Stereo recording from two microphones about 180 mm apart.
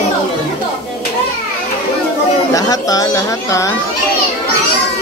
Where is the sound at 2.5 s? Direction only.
20° left (ahead or behind).